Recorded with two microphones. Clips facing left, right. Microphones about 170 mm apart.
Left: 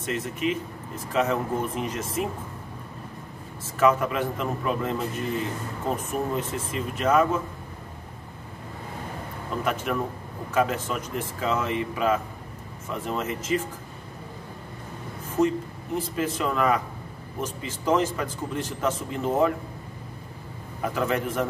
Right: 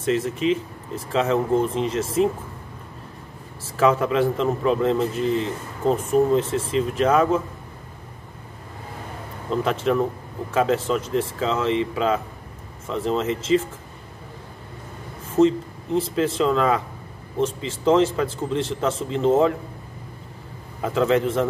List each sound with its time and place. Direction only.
0.0 s speech: 30° right (ahead or behind)
3.6 s speech: 30° right (ahead or behind)
9.5 s speech: 30° right (ahead or behind)
15.3 s speech: 25° right (ahead or behind)
20.8 s speech: 25° right (ahead or behind)